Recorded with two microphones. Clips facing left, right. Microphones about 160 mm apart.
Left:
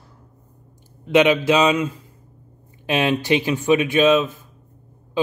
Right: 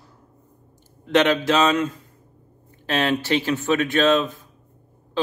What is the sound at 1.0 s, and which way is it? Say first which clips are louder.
Speech: left 3 dB; 10° left (ahead or behind).